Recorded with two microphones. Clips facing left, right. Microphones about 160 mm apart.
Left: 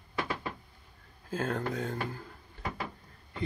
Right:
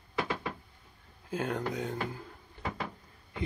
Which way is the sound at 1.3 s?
15° right (ahead or behind).